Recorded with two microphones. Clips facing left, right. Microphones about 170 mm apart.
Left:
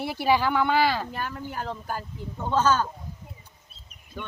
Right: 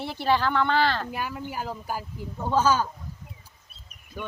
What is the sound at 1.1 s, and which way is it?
Speech, 10° right (ahead or behind).